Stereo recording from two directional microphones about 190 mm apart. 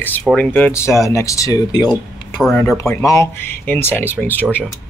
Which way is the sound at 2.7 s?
15° left (ahead or behind).